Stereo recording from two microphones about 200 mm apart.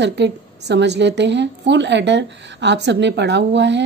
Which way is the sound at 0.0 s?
60° right (ahead or behind).